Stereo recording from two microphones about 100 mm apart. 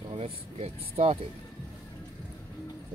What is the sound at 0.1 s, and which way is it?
Speech, 90° right.